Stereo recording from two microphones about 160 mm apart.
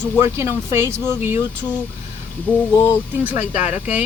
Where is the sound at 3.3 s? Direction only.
45° left (ahead or behind).